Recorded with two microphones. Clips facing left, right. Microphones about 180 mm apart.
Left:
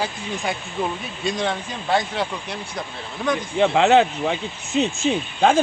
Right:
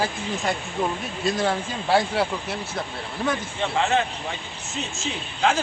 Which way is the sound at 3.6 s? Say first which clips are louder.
Left 9 dB; 70° left (ahead or behind).